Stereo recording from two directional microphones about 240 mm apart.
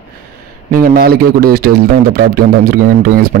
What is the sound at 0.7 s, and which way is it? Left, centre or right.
Speech, right.